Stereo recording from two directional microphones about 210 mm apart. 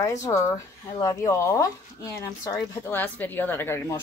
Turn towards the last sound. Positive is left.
turn(degrees=10)  # may be behind; listen again after turning